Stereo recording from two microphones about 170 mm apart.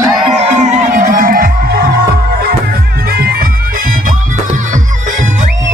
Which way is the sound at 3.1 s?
60° right (ahead or behind).